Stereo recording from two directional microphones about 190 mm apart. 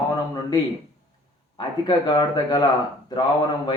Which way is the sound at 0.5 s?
20° left (ahead or behind).